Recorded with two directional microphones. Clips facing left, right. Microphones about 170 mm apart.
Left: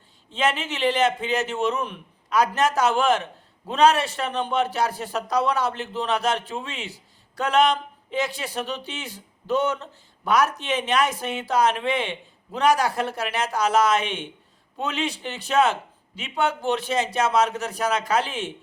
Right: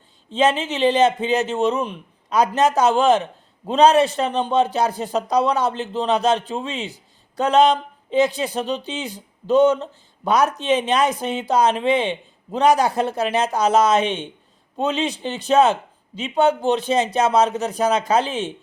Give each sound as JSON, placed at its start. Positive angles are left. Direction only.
{"t": 0.3, "sound": "a man's voice", "side_deg": -20}